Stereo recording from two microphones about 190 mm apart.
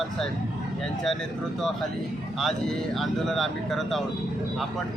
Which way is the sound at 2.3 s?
Centre (ahead or behind).